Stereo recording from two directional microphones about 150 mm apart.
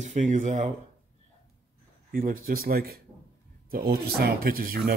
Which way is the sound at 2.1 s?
70° right (ahead or behind).